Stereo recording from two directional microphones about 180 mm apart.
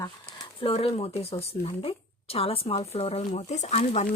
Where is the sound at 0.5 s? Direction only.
30° left (ahead or behind).